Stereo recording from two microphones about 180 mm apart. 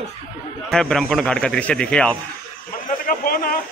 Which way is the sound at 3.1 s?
55° left (ahead or behind).